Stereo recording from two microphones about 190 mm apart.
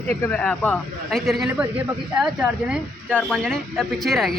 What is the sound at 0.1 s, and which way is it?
A man's voice, 10° left (ahead or behind).